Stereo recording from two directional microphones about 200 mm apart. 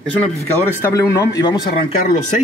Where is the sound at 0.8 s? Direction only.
15° left (ahead or behind).